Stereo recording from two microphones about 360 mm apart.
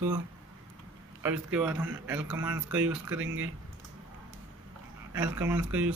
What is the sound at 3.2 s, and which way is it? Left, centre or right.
Speech, right.